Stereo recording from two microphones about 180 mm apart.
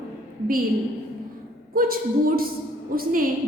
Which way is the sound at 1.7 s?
55° right (ahead or behind).